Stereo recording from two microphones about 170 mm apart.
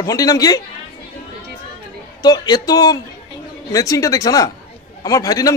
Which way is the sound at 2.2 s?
25° left (ahead or behind).